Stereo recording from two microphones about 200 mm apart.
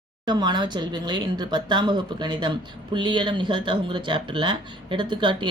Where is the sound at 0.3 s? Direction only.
20° right (ahead or behind).